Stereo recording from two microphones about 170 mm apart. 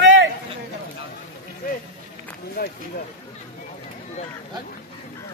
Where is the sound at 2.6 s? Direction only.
60° left (ahead or behind).